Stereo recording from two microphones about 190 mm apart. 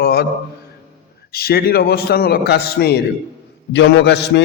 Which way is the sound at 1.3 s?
55° left (ahead or behind).